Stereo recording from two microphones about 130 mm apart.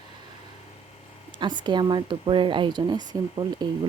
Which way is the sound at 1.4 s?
35° right (ahead or behind).